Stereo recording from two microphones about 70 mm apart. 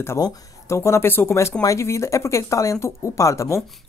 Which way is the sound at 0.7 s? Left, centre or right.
Left.